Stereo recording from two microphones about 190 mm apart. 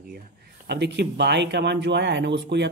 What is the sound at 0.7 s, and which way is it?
Speech, 60° right (ahead or behind).